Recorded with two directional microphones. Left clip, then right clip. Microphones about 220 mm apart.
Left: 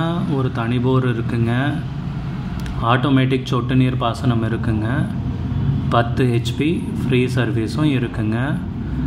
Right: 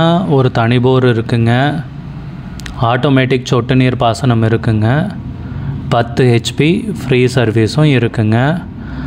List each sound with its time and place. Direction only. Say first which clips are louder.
0.0 s speech: right 11 dB; 40° right (ahead or behind)
2.8 s speech: right 5 dB; 40° right (ahead or behind)